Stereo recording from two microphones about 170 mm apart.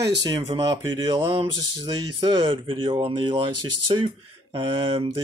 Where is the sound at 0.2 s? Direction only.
25° right (ahead or behind).